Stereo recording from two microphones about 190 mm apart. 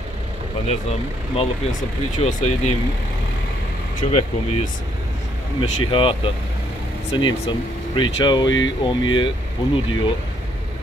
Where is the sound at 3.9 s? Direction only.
35° left (ahead or behind).